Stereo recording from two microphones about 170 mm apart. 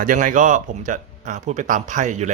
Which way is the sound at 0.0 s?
50° right (ahead or behind).